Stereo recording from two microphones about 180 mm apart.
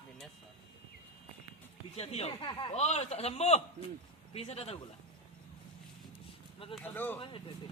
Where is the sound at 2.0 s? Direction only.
35° left (ahead or behind).